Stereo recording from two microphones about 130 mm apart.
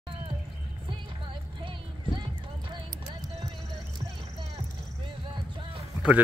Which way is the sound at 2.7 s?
35° right (ahead or behind).